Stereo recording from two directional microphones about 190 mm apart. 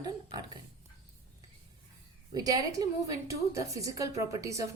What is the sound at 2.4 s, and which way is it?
A woman's voice, 20° right (ahead or behind).